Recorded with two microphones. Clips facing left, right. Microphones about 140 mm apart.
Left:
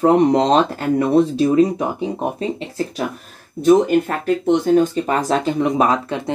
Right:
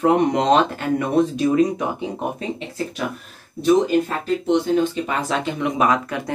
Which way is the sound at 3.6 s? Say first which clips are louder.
Left 3 dB; 55° left (ahead or behind).